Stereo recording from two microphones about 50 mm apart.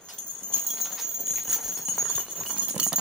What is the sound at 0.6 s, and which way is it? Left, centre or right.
Clip-clop, centre.